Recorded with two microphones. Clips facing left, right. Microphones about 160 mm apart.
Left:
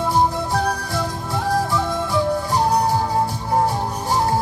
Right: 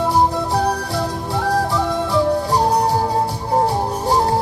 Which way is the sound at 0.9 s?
35° right (ahead or behind).